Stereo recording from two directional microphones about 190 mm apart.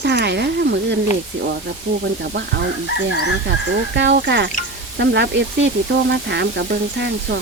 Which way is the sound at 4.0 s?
70° right (ahead or behind).